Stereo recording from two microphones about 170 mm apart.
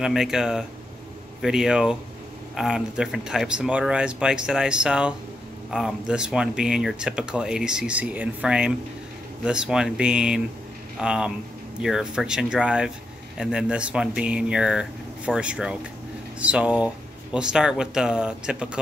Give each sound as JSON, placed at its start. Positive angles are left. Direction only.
{"t": 0.0, "sound": "speech", "side_deg": 0}